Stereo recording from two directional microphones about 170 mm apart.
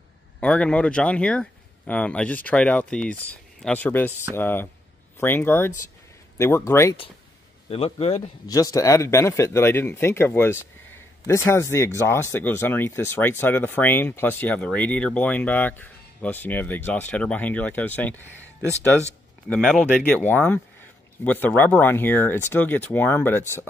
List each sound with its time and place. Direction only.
0.4 s speech: 5° left (ahead or behind)
7.7 s a man's voice: 35° left (ahead or behind)
8.5 s speech: 20° left (ahead or behind)
19.5 s speech: 5° left (ahead or behind)